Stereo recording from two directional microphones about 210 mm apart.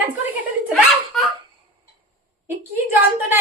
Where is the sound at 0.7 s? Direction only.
Centre (ahead or behind).